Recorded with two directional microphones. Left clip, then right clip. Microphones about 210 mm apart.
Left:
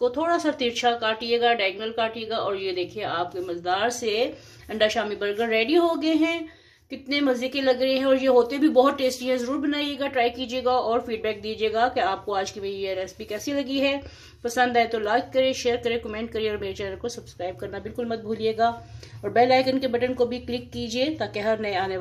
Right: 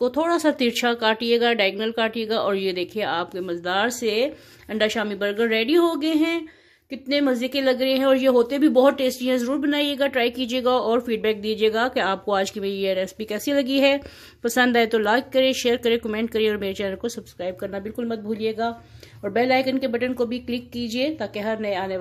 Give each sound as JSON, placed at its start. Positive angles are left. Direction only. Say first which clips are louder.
{"t": 0.0, "sound": "a woman's voice", "louder": "right 2 dB", "side_deg": -55}